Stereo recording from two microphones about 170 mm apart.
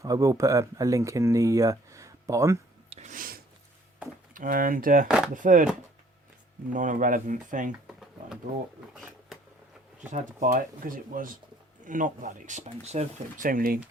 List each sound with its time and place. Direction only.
0.0 s speech: 20° right (ahead or behind)
2.9 s a sound: 45° right (ahead or behind)
4.4 s speech: 55° right (ahead or behind)
5.0 s speech: 5° right (ahead or behind)
5.3 s speech: 50° right (ahead or behind)
6.7 s speech: 50° right (ahead or behind)
10.1 s speech: 45° right (ahead or behind)